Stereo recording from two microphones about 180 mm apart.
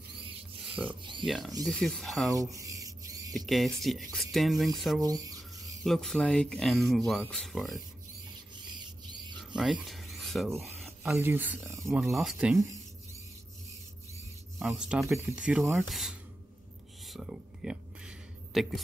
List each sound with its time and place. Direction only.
0.8 s speech: 5° right (ahead or behind)
2.5 s rodents: 20° right (ahead or behind)
3.3 s speech: centre (ahead or behind)
5.0 s speech: 20° right (ahead or behind)
5.9 s speech: centre (ahead or behind)
9.6 s a sound: 5° right (ahead or behind)
10.6 s rub: centre (ahead or behind)
11.1 s speech: 10° right (ahead or behind)
11.9 s speech: centre (ahead or behind)
14.6 s speech: centre (ahead or behind)
17.1 s a sound: centre (ahead or behind)